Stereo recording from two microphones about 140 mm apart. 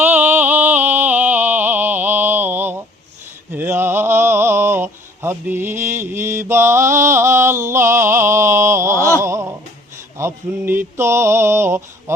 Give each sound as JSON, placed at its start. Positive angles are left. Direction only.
{"t": 0.0, "sound": "music", "side_deg": -10}
{"t": 3.5, "sound": "a sound", "side_deg": -15}
{"t": 10.2, "sound": "mantra", "side_deg": -15}